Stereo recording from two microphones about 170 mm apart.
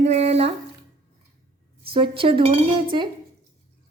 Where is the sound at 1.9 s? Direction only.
30° right (ahead or behind).